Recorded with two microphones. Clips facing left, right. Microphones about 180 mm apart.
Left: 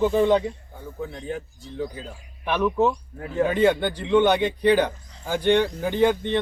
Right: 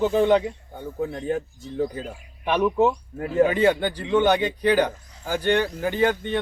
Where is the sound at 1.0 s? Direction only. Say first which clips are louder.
Right 5 dB; 45° right (ahead or behind).